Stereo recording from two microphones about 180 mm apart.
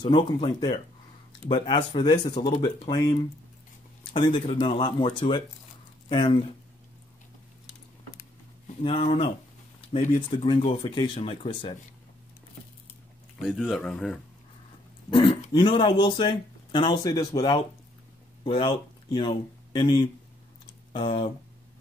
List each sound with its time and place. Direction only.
0.0 s speech: 25° left (ahead or behind)
4.6 s speech: 25° left (ahead or behind)
8.8 s speech: 30° left (ahead or behind)
10.4 s speech: 25° left (ahead or behind)
13.4 s speech: centre (ahead or behind)
15.0 s speech: 30° left (ahead or behind)